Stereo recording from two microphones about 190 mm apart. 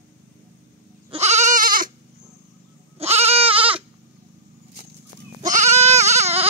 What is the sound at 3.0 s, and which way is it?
Goat, 35° right (ahead or behind).